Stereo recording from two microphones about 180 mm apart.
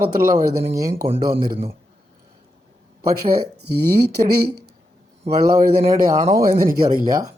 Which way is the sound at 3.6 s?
65° right (ahead or behind).